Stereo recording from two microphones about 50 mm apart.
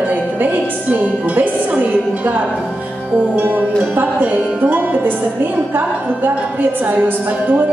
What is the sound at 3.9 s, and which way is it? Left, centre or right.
A woman's voice, right.